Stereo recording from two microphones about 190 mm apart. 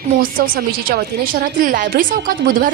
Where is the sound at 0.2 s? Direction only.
50° right (ahead or behind).